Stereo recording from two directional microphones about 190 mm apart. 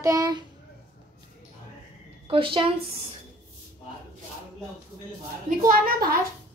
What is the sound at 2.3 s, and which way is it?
Speech, 25° right (ahead or behind).